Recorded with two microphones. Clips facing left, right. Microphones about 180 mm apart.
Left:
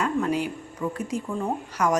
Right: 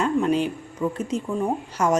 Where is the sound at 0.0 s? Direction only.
25° right (ahead or behind).